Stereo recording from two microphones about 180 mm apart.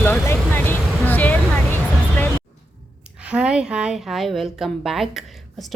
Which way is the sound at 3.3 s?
5° right (ahead or behind).